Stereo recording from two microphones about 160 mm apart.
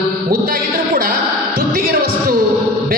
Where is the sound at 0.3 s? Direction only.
65° right (ahead or behind).